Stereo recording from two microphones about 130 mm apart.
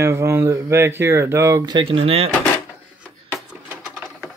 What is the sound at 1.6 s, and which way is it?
Speech, 40° right (ahead or behind).